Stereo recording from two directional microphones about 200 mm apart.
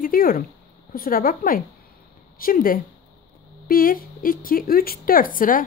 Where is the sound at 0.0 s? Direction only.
45° left (ahead or behind).